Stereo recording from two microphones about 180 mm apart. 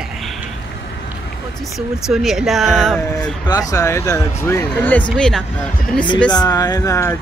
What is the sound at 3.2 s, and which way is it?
Speech, 20° left (ahead or behind).